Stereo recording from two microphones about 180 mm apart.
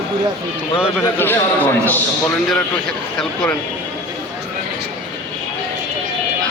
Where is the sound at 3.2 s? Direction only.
5° left (ahead or behind).